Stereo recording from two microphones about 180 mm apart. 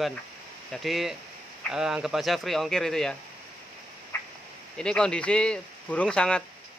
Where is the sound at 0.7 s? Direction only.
Centre (ahead or behind).